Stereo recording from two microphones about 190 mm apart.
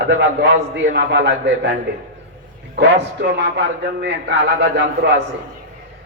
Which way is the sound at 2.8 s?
65° right (ahead or behind).